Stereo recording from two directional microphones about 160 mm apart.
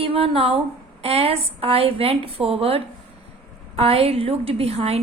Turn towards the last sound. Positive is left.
turn(degrees=-40)  # may be behind; listen again after turning